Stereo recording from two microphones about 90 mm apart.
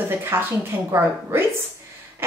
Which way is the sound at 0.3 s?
25° right (ahead or behind).